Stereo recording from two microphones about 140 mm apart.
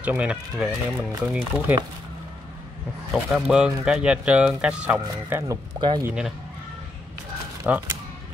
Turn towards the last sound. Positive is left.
turn(degrees=-10)  # may be behind; listen again after turning